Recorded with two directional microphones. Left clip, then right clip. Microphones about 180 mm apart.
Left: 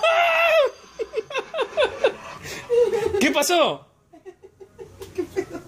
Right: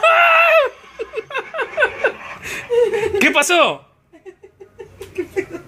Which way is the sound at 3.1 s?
5° left (ahead or behind).